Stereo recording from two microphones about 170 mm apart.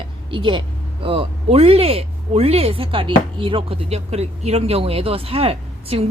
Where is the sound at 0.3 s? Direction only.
30° right (ahead or behind).